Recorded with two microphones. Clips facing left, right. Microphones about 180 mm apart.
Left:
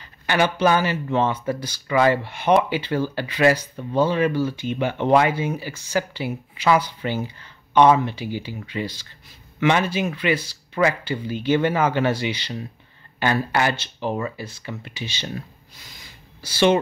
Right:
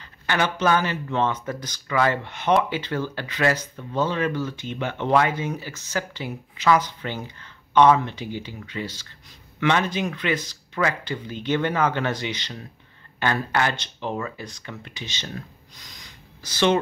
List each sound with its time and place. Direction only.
0.3 s speech: 10° left (ahead or behind)